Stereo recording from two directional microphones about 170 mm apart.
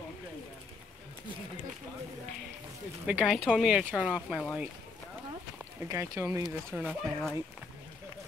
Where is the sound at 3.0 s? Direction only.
5° right (ahead or behind).